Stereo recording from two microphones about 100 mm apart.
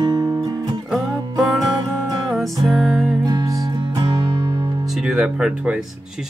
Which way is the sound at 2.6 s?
Centre (ahead or behind).